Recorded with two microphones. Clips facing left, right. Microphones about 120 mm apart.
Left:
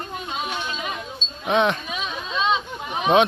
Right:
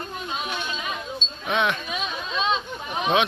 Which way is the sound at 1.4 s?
35° left (ahead or behind).